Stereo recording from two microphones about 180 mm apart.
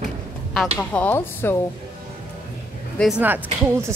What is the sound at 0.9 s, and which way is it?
Speech, 10° left (ahead or behind).